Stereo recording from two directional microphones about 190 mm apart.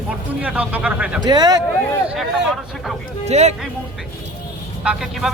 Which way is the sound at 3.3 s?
35° right (ahead or behind).